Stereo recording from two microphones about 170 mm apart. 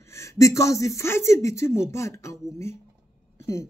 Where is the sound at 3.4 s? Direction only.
15° left (ahead or behind).